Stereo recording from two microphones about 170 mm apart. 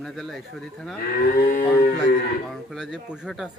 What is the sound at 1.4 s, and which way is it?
Livestock, 50° left (ahead or behind).